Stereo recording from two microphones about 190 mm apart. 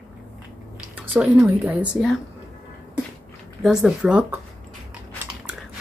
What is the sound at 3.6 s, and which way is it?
Speech, centre (ahead or behind).